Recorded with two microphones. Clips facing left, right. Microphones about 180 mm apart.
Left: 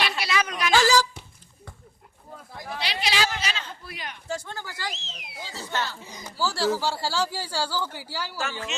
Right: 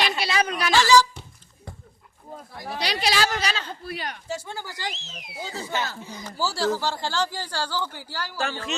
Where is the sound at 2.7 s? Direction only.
40° right (ahead or behind).